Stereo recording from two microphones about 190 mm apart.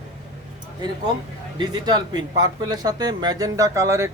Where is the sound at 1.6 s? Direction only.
20° right (ahead or behind).